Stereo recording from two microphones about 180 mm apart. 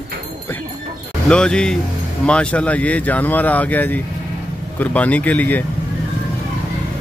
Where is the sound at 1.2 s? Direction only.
5° left (ahead or behind).